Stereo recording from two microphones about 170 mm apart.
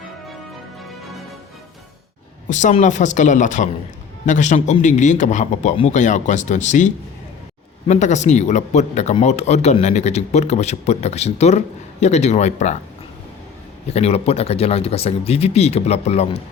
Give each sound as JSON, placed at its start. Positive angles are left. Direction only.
{"t": 2.5, "sound": "a man's voice", "side_deg": 45}
{"t": 13.8, "sound": "a man's voice", "side_deg": 40}